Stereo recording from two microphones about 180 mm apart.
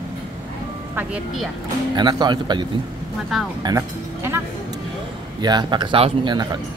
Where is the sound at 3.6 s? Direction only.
15° right (ahead or behind).